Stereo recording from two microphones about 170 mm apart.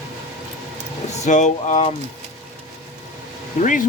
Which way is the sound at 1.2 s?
45° left (ahead or behind).